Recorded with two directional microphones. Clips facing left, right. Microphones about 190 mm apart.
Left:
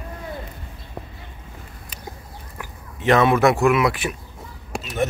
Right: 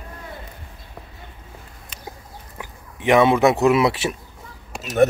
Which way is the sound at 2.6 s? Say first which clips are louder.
Left 1 dB; 15° right (ahead or behind).